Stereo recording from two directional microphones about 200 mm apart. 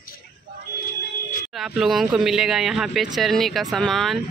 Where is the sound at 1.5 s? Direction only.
Centre (ahead or behind).